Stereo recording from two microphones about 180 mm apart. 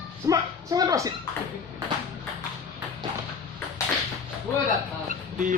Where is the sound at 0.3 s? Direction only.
20° right (ahead or behind).